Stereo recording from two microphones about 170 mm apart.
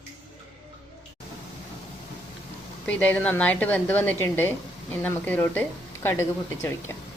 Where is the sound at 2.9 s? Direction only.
10° left (ahead or behind).